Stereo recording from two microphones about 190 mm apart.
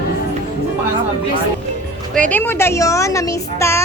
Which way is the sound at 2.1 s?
5° left (ahead or behind).